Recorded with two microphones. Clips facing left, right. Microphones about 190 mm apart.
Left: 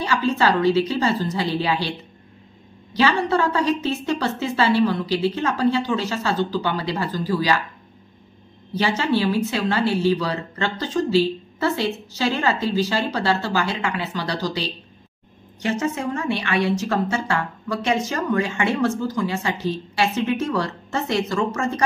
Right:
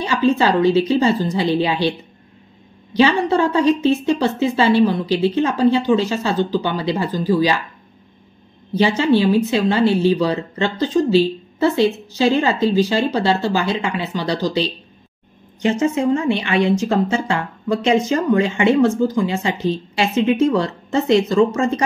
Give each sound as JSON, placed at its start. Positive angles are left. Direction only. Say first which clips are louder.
{"t": 0.0, "sound": "a woman's voice", "louder": "right 4 dB", "side_deg": -20}
{"t": 8.7, "sound": "a woman's voice", "louder": "right 6 dB", "side_deg": -20}